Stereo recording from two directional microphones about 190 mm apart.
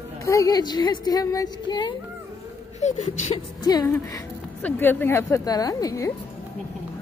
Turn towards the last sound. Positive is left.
turn(degrees=15)  # may be behind; listen again after turning